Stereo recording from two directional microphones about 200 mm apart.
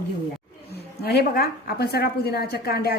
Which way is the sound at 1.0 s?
50° left (ahead or behind).